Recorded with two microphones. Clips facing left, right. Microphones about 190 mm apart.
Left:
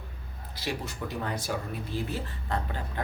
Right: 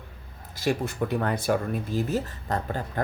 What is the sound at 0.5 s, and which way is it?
Speech, 45° right (ahead or behind).